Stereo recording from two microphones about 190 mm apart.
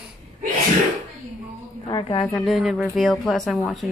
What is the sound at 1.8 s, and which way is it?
Speech, 20° left (ahead or behind).